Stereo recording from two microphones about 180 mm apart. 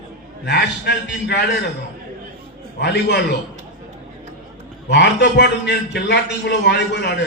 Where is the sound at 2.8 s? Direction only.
70° left (ahead or behind).